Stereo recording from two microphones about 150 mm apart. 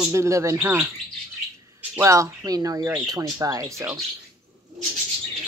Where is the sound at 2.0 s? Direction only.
20° right (ahead or behind).